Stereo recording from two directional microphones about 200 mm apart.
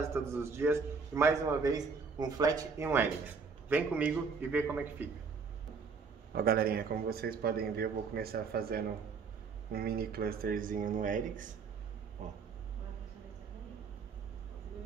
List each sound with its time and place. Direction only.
0.0 s a man's voice: 10° right (ahead or behind)
6.3 s a man's voice: 50° right (ahead or behind)